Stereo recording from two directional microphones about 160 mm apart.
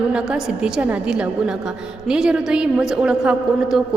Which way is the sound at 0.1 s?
5° right (ahead or behind).